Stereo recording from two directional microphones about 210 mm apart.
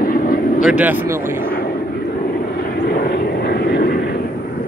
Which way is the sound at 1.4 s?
40° left (ahead or behind).